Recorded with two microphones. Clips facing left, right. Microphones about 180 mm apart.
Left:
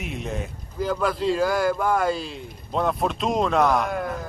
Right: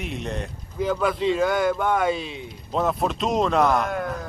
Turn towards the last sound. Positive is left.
turn(degrees=0)  # may be behind; listen again after turning